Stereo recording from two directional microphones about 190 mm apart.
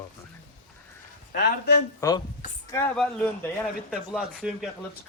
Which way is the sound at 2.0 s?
15° left (ahead or behind).